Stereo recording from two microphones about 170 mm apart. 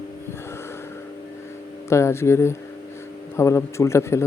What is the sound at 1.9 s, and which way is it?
Speech, 15° left (ahead or behind).